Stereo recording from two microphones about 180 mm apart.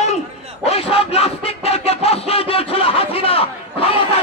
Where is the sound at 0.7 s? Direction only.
35° left (ahead or behind).